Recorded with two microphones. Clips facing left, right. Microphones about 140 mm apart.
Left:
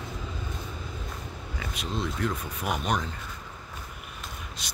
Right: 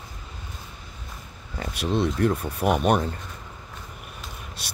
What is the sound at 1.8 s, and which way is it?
Speech, 60° right (ahead or behind).